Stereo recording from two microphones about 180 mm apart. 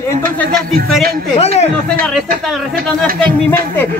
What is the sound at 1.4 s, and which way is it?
Speech, 35° left (ahead or behind).